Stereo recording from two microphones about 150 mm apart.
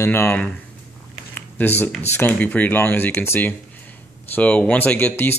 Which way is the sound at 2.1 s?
10° left (ahead or behind).